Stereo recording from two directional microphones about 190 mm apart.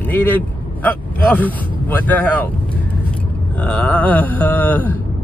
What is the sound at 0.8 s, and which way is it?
Speech, 10° left (ahead or behind).